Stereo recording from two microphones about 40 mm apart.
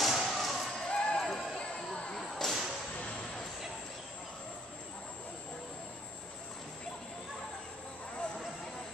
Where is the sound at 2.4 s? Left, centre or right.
Centre.